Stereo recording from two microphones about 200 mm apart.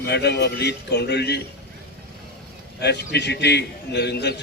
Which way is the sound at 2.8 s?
55° left (ahead or behind).